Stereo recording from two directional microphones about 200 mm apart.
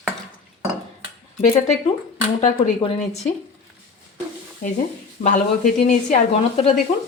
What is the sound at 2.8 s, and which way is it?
Sizzle, 35° left (ahead or behind).